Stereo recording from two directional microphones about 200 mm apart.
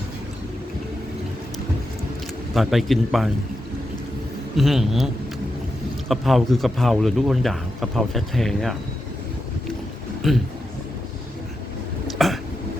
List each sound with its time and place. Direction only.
2.6 s speech: centre (ahead or behind)
4.5 s speech: centre (ahead or behind)
6.1 s speech: centre (ahead or behind)
10.2 s speech: centre (ahead or behind)
12.1 s throat clearing: centre (ahead or behind)